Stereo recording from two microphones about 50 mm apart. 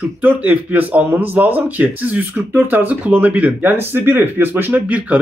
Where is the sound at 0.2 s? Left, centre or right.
Right.